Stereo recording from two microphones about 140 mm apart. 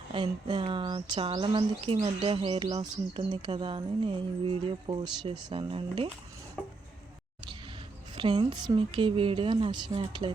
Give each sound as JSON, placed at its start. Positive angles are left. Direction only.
{"t": 0.1, "sound": "speech", "side_deg": -35}
{"t": 2.7, "sound": "speech", "side_deg": -30}
{"t": 6.6, "sound": "chopping", "side_deg": 5}
{"t": 8.1, "sound": "speech", "side_deg": -35}